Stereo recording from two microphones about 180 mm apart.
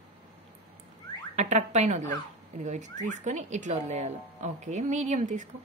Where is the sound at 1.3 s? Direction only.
40° right (ahead or behind).